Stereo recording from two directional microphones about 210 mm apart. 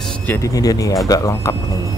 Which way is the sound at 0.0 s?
10° left (ahead or behind).